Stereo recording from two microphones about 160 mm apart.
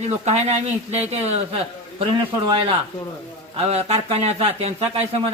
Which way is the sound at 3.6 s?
40° right (ahead or behind).